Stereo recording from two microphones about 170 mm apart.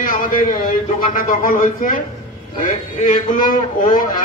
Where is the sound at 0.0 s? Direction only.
55° left (ahead or behind).